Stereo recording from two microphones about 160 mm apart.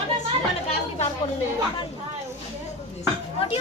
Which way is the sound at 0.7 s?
40° left (ahead or behind).